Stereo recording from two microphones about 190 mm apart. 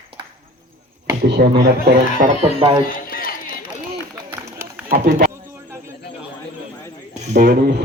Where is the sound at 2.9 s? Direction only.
50° left (ahead or behind).